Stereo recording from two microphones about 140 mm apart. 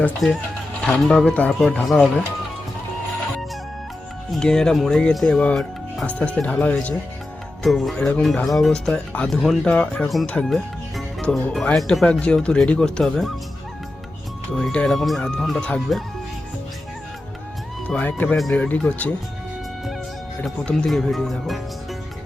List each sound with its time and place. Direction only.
0.0 s speech: 10° left (ahead or behind)
4.3 s speech: 5° left (ahead or behind)
14.5 s speech: 5° left (ahead or behind)
17.8 s speech: 10° left (ahead or behind)
20.4 s speech: 5° left (ahead or behind)